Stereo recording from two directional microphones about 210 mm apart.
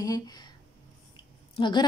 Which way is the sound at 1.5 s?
20° left (ahead or behind).